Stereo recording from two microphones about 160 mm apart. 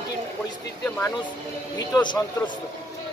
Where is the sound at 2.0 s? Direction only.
30° left (ahead or behind).